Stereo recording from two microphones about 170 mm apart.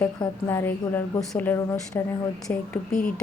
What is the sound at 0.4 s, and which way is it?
Speech, 10° left (ahead or behind).